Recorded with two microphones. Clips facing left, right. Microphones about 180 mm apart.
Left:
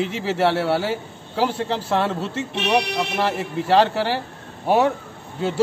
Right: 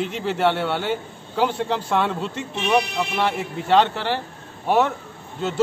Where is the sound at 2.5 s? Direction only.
75° left (ahead or behind).